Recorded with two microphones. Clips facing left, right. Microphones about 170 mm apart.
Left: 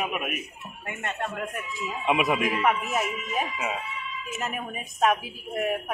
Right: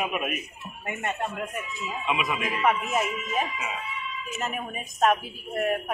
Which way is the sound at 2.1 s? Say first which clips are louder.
Left 5 dB; 60° left (ahead or behind).